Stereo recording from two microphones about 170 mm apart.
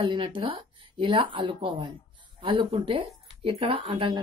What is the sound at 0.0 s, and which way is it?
A woman's voice, 30° right (ahead or behind).